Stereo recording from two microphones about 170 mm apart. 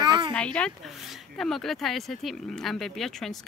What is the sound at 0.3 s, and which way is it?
Speech, 5° left (ahead or behind).